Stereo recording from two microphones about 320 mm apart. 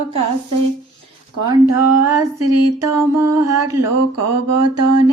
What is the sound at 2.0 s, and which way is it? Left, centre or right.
Mantra, right.